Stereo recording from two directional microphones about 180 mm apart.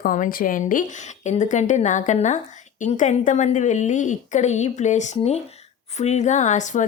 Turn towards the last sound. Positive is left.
turn(degrees=45)  # may be behind; listen again after turning